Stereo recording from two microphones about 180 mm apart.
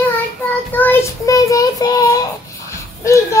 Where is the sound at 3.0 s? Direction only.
15° left (ahead or behind).